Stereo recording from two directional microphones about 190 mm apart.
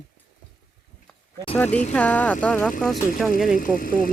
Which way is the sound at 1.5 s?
10° left (ahead or behind).